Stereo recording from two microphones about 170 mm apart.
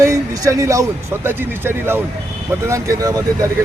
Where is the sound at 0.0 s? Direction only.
20° right (ahead or behind).